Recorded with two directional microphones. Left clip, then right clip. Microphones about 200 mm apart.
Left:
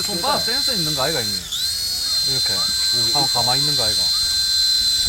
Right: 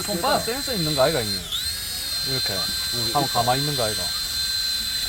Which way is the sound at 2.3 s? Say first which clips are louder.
Left 5 dB; 25° right (ahead or behind).